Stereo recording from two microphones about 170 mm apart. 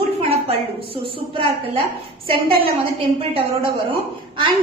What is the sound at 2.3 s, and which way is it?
A woman's voice, 35° right (ahead or behind).